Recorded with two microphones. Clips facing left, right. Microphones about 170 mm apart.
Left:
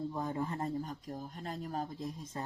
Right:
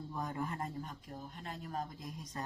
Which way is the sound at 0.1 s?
25° left (ahead or behind).